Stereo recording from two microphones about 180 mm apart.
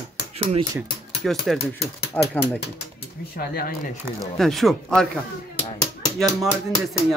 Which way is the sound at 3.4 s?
55° left (ahead or behind).